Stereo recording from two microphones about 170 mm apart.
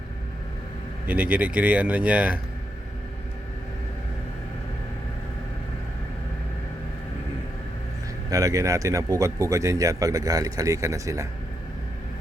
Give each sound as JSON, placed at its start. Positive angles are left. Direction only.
{"t": 1.0, "sound": "speech", "side_deg": -10}
{"t": 8.3, "sound": "speech", "side_deg": -20}